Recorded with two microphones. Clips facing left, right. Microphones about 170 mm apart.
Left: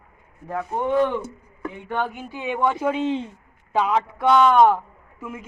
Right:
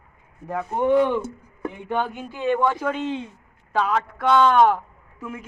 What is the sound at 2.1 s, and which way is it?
Speech, 10° left (ahead or behind).